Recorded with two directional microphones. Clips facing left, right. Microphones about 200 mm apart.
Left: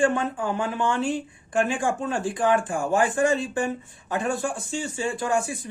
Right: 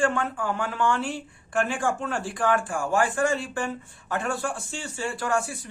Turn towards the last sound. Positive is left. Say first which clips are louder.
# left 2 dB
turn(degrees=15)  # may be behind; listen again after turning